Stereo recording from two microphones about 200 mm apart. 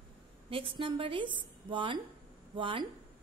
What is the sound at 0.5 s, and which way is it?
Speech, 25° right (ahead or behind).